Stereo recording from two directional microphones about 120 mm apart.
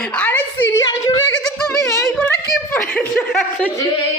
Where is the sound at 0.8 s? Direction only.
30° left (ahead or behind).